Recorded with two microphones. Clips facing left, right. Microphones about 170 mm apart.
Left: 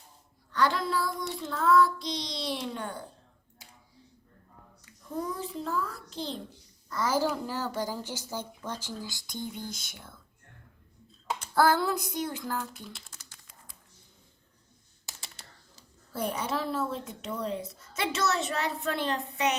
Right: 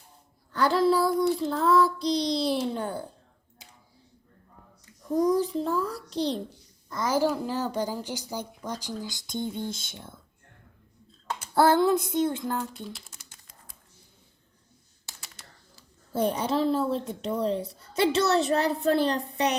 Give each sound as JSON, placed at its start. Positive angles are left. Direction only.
{"t": 0.5, "sound": "a child's voice", "side_deg": -35}
{"t": 1.1, "sound": "child singing", "side_deg": 0}
{"t": 1.4, "sound": "a child's voice", "side_deg": -35}
{"t": 2.0, "sound": "child singing", "side_deg": 0}
{"t": 2.6, "sound": "a child's voice", "side_deg": -35}
{"t": 5.1, "sound": "a child's voice", "side_deg": -40}
{"t": 6.1, "sound": "child singing", "side_deg": 0}
{"t": 6.9, "sound": "a woman's voice", "side_deg": -15}
{"t": 11.5, "sound": "a sound", "side_deg": -25}
{"t": 12.9, "sound": "a sound", "side_deg": -10}
{"t": 15.0, "sound": "a sound", "side_deg": 20}
{"t": 16.1, "sound": "a child's voice", "side_deg": -30}